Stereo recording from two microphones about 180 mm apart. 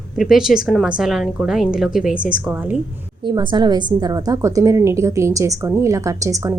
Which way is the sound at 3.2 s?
25° right (ahead or behind).